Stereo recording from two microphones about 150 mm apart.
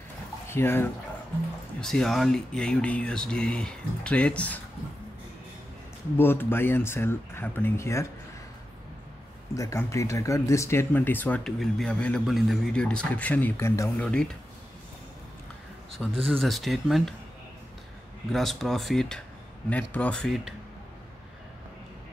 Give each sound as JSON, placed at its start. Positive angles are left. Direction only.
{"t": 0.5, "sound": "speech", "side_deg": 15}
{"t": 1.8, "sound": "speech", "side_deg": 5}
{"t": 6.1, "sound": "speech", "side_deg": 15}
{"t": 9.5, "sound": "speech", "side_deg": 20}
{"t": 14.0, "sound": "speech", "side_deg": 5}
{"t": 16.3, "sound": "speech", "side_deg": 0}
{"t": 18.3, "sound": "speech", "side_deg": 0}